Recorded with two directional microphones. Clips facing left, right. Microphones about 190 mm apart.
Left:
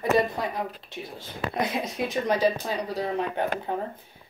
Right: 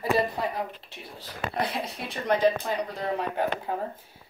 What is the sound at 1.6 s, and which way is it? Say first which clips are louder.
Speech: left 2 dB; 30° right (ahead or behind).